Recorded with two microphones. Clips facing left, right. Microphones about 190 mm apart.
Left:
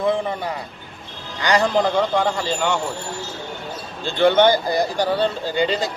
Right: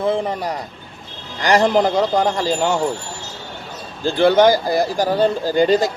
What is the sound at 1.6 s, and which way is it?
A man's voice, 35° right (ahead or behind).